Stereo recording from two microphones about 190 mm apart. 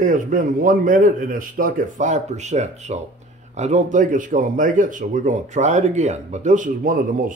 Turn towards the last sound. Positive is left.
turn(degrees=-45)  # may be behind; listen again after turning